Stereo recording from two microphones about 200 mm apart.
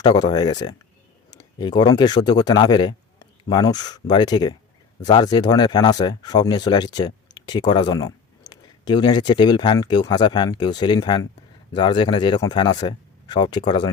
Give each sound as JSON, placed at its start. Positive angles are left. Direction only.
{"t": 0.0, "sound": "speech", "side_deg": 20}